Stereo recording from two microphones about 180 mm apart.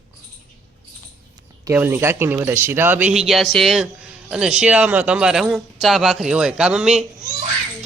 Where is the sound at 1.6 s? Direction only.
10° right (ahead or behind).